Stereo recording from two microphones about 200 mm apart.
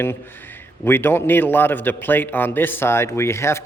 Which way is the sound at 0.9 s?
10° left (ahead or behind).